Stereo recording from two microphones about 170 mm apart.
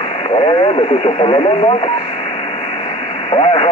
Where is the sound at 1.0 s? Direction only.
30° left (ahead or behind).